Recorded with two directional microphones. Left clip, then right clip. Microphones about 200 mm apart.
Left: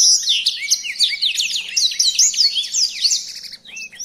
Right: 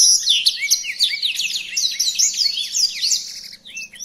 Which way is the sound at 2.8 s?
15° left (ahead or behind).